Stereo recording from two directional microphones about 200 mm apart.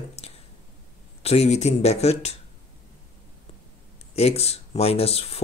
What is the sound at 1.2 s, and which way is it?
Speech, 30° left (ahead or behind).